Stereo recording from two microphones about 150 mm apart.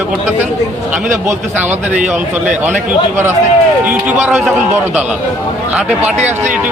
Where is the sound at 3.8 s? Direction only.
10° right (ahead or behind).